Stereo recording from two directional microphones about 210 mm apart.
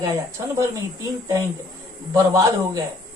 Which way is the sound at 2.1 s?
15° right (ahead or behind).